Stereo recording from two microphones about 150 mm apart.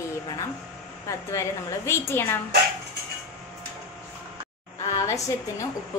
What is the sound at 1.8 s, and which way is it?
Speech, 15° left (ahead or behind).